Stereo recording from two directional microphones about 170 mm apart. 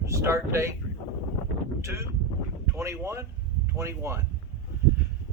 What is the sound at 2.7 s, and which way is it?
Speech, 15° right (ahead or behind).